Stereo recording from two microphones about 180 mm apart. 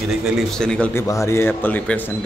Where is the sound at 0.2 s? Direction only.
Centre (ahead or behind).